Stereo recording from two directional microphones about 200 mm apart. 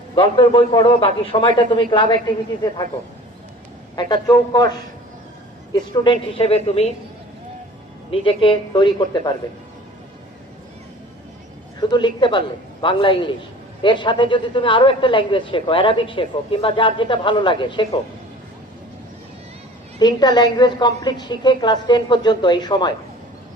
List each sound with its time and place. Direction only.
0.2 s speech: 25° left (ahead or behind)
4.1 s speech: 20° left (ahead or behind)
5.7 s speech: 25° left (ahead or behind)
8.1 s speech: 25° left (ahead or behind)
11.8 s speech: 20° left (ahead or behind)
20.0 s speech: 20° left (ahead or behind)